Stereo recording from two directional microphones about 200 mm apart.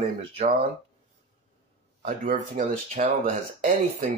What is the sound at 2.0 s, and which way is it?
Speech, 45° right (ahead or behind).